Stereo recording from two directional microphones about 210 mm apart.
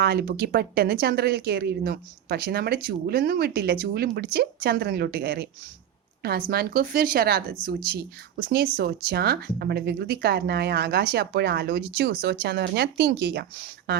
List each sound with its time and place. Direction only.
0.0 s speech: 50° right (ahead or behind)
6.5 s speech: 45° right (ahead or behind)